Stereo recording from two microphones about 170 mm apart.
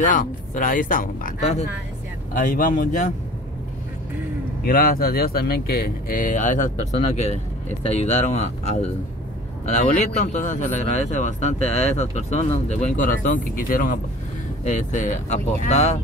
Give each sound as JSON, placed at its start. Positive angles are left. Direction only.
{"t": 0.0, "sound": "speech", "side_deg": 50}
{"t": 2.3, "sound": "speech", "side_deg": 55}
{"t": 4.6, "sound": "speech", "side_deg": 60}
{"t": 14.6, "sound": "speech", "side_deg": 45}